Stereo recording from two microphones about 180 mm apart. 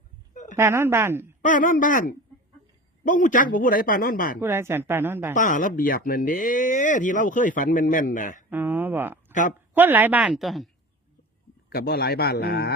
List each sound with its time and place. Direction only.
0.5 s a woman's voice: 15° right (ahead or behind)
1.5 s speech: 45° left (ahead or behind)
4.4 s a woman's voice: 15° right (ahead or behind)
5.3 s speech: 45° left (ahead or behind)
8.4 s a woman's voice: 10° right (ahead or behind)
11.7 s a man's voice: 60° left (ahead or behind)